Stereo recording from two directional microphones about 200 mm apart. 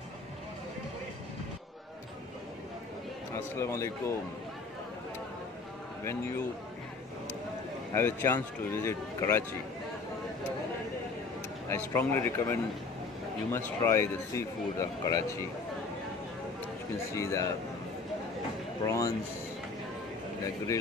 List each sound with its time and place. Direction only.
3.5 s speech: 15° left (ahead or behind)
7.9 s speech: 10° left (ahead or behind)
11.7 s speech: 10° left (ahead or behind)
17.1 s speech: 15° left (ahead or behind)
18.9 s speech: 15° left (ahead or behind)
20.4 s speech: 15° left (ahead or behind)